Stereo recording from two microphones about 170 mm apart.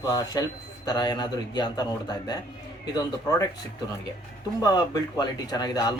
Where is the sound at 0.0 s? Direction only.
20° left (ahead or behind).